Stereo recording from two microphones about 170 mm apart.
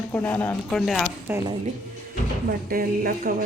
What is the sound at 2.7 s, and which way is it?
Speech, 55° right (ahead or behind).